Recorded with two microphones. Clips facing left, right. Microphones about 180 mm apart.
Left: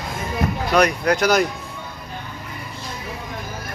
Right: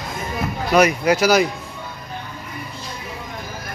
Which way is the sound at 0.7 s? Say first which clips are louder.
Right 3 dB; 5° right (ahead or behind).